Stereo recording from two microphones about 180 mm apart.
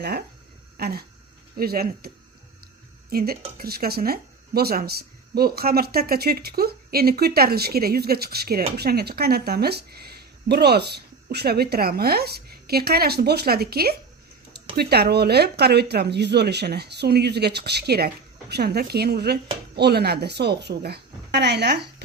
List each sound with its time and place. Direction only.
0.0 s speech: 65° right (ahead or behind)
3.1 s speech: 55° right (ahead or behind)